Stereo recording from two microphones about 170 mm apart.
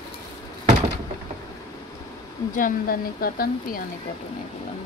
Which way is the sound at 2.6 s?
55° left (ahead or behind).